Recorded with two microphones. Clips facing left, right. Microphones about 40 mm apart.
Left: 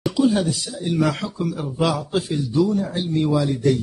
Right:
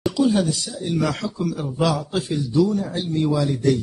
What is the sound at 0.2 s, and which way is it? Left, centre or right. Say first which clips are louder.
A man's voice: left 1 dB; centre.